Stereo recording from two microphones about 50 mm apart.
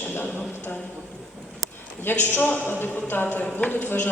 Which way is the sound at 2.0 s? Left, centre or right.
Left.